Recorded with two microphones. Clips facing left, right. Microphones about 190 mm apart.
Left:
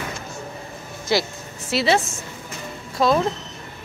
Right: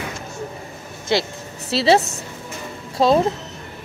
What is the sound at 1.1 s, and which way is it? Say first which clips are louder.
Speech: right 1 dB; 25° right (ahead or behind).